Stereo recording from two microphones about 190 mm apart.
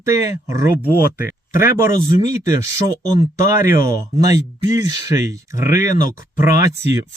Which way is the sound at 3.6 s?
15° right (ahead or behind).